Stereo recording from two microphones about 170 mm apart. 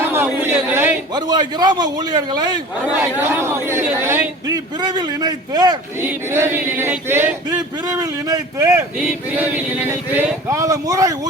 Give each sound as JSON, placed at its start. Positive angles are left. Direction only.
{"t": 0.0, "sound": "a sound", "side_deg": -15}
{"t": 1.1, "sound": "a man's voice", "side_deg": -25}
{"t": 3.2, "sound": "a man's voice", "side_deg": -15}
{"t": 6.0, "sound": "a man's voice", "side_deg": -15}
{"t": 7.5, "sound": "a man's voice", "side_deg": -20}
{"t": 9.0, "sound": "a man's voice", "side_deg": -10}